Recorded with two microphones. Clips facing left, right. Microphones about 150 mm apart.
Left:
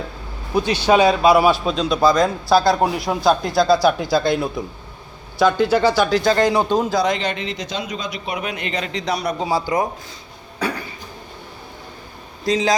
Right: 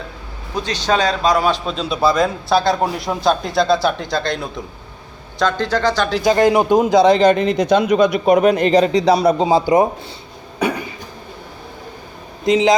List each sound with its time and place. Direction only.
0.5 s a man's voice: 10° left (ahead or behind)
1.7 s a man's voice: 5° right (ahead or behind)
6.2 s speech: 20° right (ahead or behind)
7.2 s a man's voice: 45° right (ahead or behind); by 8.2 s 60° right (ahead or behind)
8.2 s a man's voice: 45° right (ahead or behind); by 9.9 s 20° right (ahead or behind)
10.6 s cough: 20° right (ahead or behind)
12.5 s a man's voice: 20° right (ahead or behind)